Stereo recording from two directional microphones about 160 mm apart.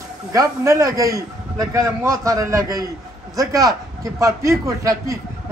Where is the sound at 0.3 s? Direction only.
20° right (ahead or behind).